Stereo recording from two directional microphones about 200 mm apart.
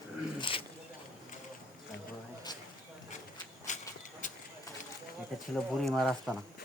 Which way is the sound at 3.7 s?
35° left (ahead or behind).